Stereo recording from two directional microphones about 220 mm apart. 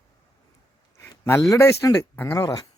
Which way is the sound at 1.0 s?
10° left (ahead or behind).